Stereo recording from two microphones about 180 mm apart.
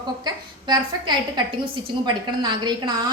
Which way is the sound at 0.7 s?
25° right (ahead or behind).